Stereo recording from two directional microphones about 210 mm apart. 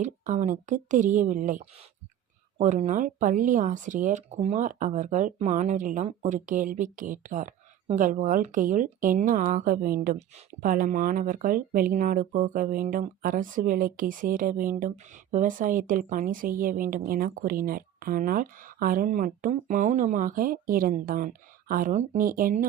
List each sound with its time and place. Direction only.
0.0 s a woman's voice: 35° right (ahead or behind)